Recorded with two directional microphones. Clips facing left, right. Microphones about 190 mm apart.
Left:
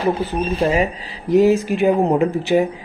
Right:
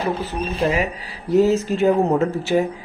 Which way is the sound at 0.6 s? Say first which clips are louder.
Left 2 dB; 30° left (ahead or behind).